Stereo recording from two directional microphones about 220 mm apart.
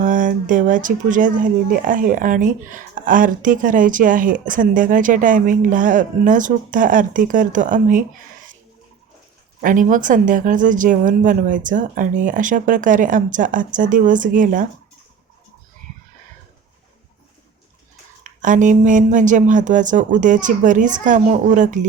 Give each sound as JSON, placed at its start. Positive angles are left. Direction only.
{"t": 0.0, "sound": "speech", "side_deg": -35}
{"t": 9.6, "sound": "speech", "side_deg": -35}
{"t": 18.2, "sound": "speech", "side_deg": -35}